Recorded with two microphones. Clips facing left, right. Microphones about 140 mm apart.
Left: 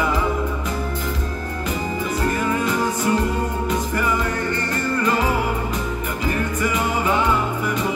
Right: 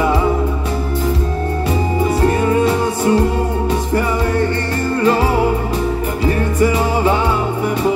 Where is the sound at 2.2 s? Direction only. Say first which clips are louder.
Right 7 dB; 25° right (ahead or behind).